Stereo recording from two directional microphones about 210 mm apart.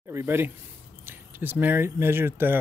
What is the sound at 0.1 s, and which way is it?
Speech, 10° right (ahead or behind).